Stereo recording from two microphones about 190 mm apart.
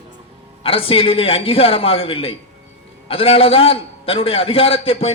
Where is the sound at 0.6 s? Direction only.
30° left (ahead or behind).